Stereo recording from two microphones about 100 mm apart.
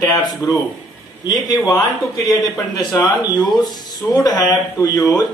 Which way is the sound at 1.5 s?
45° left (ahead or behind).